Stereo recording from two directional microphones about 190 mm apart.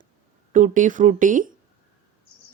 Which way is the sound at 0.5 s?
40° right (ahead or behind).